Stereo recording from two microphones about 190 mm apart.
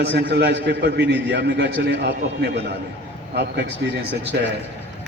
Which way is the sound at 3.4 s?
65° right (ahead or behind).